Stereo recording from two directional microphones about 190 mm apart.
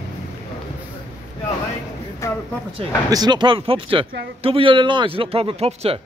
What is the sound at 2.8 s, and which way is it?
A man's voice, 20° right (ahead or behind).